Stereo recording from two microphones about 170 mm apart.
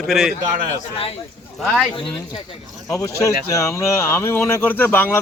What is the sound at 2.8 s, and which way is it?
Speech, 20° left (ahead or behind).